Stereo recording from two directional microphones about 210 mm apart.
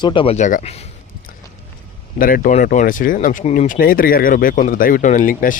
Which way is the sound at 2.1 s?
40° left (ahead or behind).